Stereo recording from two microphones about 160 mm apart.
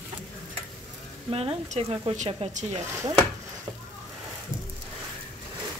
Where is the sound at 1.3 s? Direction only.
40° right (ahead or behind).